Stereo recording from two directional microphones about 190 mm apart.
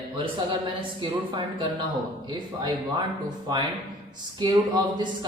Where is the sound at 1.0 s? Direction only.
25° right (ahead or behind).